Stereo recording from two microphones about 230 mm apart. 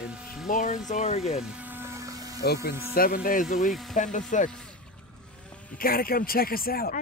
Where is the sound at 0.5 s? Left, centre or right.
Left.